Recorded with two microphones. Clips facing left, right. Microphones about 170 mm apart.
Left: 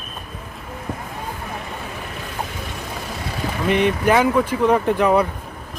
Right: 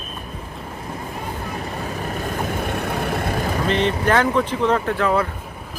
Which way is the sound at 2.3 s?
55° right (ahead or behind).